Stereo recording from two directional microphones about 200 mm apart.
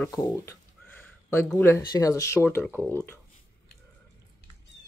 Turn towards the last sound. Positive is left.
turn(degrees=-10)  # may be behind; listen again after turning